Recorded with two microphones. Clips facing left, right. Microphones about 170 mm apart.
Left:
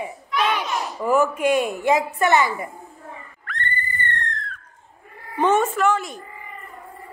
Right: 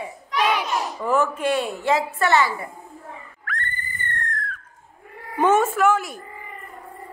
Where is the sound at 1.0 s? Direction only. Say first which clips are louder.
Left 3 dB; 10° left (ahead or behind).